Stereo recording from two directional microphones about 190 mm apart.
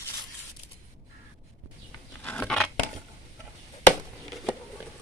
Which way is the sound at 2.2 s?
5° left (ahead or behind).